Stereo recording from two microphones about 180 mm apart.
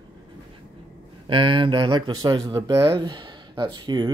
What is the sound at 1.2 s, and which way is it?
Speech, 25° right (ahead or behind).